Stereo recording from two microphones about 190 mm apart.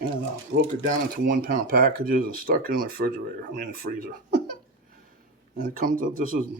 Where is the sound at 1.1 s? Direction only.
50° right (ahead or behind).